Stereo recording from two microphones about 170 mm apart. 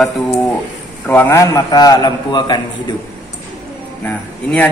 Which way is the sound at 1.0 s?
10° left (ahead or behind).